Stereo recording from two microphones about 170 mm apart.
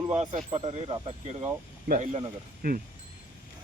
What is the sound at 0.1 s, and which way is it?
Speech, 45° right (ahead or behind).